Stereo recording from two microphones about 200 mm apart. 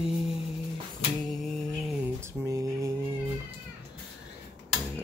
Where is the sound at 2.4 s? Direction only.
15° right (ahead or behind).